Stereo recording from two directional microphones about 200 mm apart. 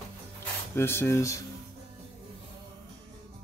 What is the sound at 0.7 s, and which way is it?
Speech, 10° left (ahead or behind).